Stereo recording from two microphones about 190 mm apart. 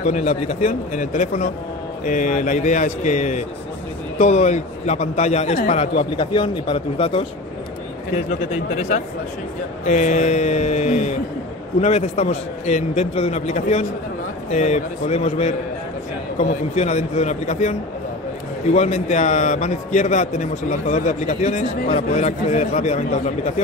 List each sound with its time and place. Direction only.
0.0 s a man's voice: 35° left (ahead or behind)
8.3 s a man's voice: 35° left (ahead or behind)